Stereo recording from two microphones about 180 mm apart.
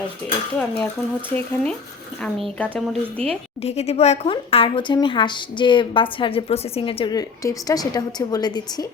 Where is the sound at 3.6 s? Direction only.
35° left (ahead or behind).